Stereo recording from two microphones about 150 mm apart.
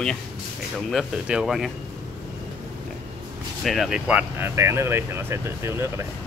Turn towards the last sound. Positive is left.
turn(degrees=-15)  # may be behind; listen again after turning